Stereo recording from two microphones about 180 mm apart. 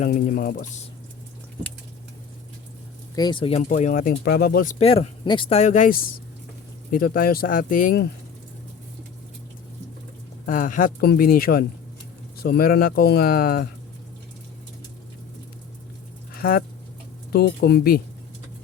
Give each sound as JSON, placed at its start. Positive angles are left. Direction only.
{"t": 0.0, "sound": "speech", "side_deg": 50}
{"t": 3.2, "sound": "speech", "side_deg": 25}
{"t": 3.6, "sound": "speech", "side_deg": 45}
{"t": 4.1, "sound": "speech", "side_deg": 65}
{"t": 4.8, "sound": "speech", "side_deg": 35}
{"t": 10.4, "sound": "speech", "side_deg": 50}
{"t": 16.3, "sound": "a sound", "side_deg": 55}
{"t": 17.3, "sound": "speech", "side_deg": 60}